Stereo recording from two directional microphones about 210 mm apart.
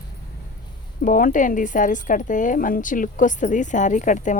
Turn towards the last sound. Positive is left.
turn(degrees=35)  # may be behind; listen again after turning